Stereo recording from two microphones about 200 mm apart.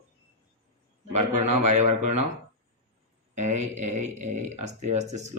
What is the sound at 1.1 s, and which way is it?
A man's voice, 35° right (ahead or behind).